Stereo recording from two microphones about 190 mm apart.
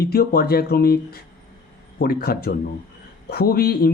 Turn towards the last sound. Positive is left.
turn(degrees=55)  # may be behind; listen again after turning